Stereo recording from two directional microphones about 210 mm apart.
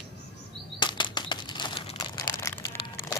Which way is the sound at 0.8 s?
20° left (ahead or behind).